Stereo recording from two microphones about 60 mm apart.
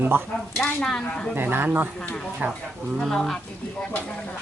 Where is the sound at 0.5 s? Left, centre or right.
Centre.